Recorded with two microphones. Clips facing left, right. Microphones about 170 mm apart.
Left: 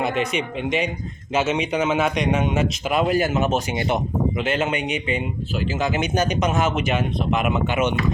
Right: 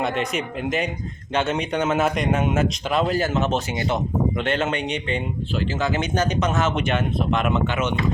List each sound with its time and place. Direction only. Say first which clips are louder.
0.0 s speech: left 1 dB; centre (ahead or behind)
2.9 s speech: left 2 dB; 10° left (ahead or behind)
4.4 s speech: left 1 dB; 5° left (ahead or behind)